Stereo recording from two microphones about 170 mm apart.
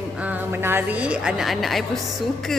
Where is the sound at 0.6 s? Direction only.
10° right (ahead or behind).